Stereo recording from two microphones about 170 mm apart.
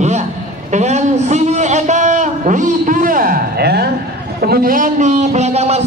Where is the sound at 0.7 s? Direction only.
40° right (ahead or behind).